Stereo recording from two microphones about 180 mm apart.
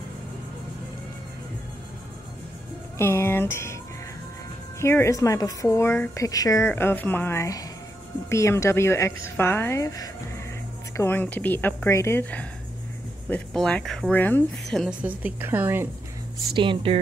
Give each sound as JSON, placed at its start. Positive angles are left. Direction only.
{"t": 3.0, "sound": "speech", "side_deg": 15}
{"t": 4.7, "sound": "a woman's voice", "side_deg": 15}
{"t": 16.5, "sound": "speech", "side_deg": -30}